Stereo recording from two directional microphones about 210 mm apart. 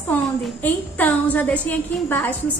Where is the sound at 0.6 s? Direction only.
5° left (ahead or behind).